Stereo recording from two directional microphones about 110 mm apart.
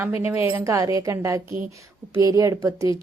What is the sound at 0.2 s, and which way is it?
Speech, 20° right (ahead or behind).